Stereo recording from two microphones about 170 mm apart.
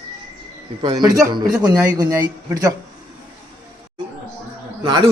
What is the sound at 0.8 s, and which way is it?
A man's voice, 25° right (ahead or behind).